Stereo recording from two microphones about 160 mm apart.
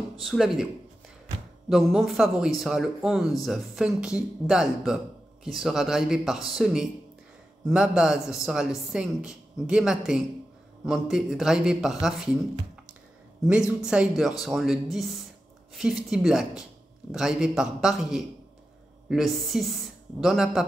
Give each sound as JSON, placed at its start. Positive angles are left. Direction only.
{"t": 0.2, "sound": "speech", "side_deg": 0}
{"t": 1.7, "sound": "speech", "side_deg": 0}
{"t": 13.5, "sound": "speech", "side_deg": -5}